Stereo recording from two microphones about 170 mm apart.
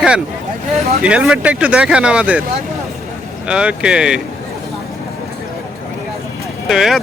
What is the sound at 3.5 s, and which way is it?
Speech, 5° right (ahead or behind).